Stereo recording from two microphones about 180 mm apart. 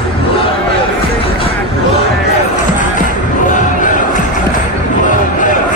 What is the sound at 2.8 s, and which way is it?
Music, 45° left (ahead or behind).